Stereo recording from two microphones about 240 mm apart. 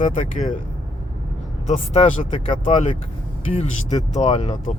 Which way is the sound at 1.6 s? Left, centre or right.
Left.